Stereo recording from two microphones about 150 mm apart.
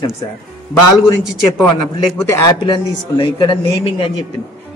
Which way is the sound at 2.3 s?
20° left (ahead or behind).